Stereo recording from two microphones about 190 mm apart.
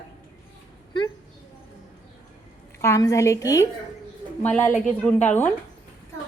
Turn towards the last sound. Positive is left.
turn(degrees=10)  # may be behind; listen again after turning